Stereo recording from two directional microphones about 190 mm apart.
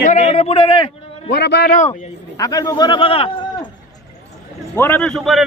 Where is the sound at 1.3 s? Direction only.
60° left (ahead or behind).